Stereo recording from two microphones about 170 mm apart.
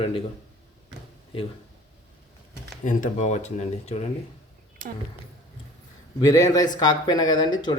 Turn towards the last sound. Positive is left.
turn(degrees=25)  # may be behind; listen again after turning